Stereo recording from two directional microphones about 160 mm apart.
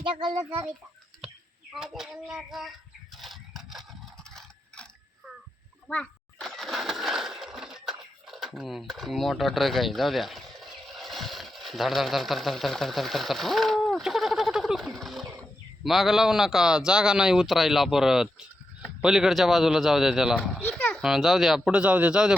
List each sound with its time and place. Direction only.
0.0 s a child's voice: 30° right (ahead or behind)
1.7 s speech: centre (ahead or behind)
3.2 s a sound: centre (ahead or behind)
5.9 s breaking: 5° left (ahead or behind)
8.3 s speech: centre (ahead or behind)
14.9 s a sound: centre (ahead or behind)
15.8 s speech: centre (ahead or behind)